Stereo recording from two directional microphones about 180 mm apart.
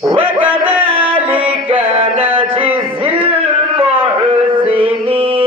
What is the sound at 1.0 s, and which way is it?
Music, 10° right (ahead or behind).